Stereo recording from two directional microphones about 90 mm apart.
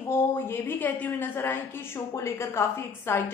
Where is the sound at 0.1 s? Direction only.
25° left (ahead or behind).